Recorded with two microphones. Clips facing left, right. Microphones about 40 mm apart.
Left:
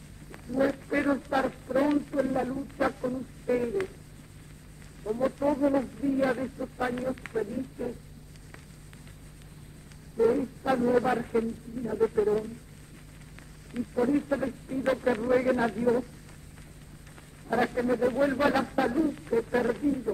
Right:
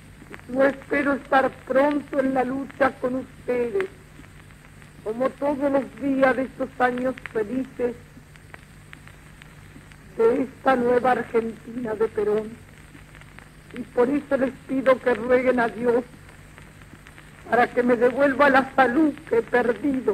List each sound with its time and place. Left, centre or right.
0.3 s speech: right
0.9 s a man's voice: right
1.6 s a man's voice: right
2.5 s speech: right
2.9 s a man's voice: right
5.0 s a man's voice: right
6.0 s speech: right
6.6 s a man's voice: right
7.5 s speech: right
10.1 s a man's voice: right
11.1 s speech: right
12.0 s speech: right
13.9 s a man's voice: right
17.5 s a man's voice: right